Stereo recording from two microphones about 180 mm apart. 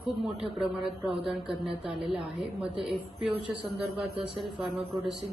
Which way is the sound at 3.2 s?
30° right (ahead or behind).